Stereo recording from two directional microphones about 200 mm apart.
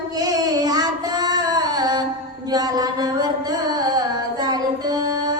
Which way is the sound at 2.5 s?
20° right (ahead or behind).